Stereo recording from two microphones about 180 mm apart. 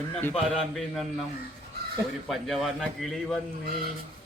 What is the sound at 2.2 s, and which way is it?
A man's voice, centre (ahead or behind).